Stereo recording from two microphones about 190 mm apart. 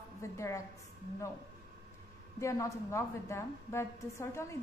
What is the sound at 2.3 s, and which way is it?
A woman's voice, 15° left (ahead or behind).